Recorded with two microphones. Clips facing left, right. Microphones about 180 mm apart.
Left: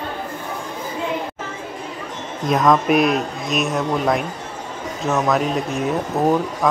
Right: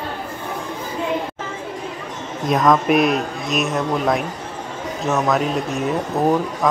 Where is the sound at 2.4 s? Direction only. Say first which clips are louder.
Even; centre (ahead or behind).